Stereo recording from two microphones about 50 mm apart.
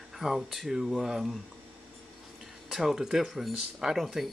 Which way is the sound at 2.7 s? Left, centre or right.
Centre.